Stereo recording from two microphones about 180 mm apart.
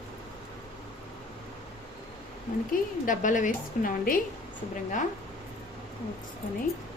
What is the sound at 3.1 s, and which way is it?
A woman's voice, 45° left (ahead or behind).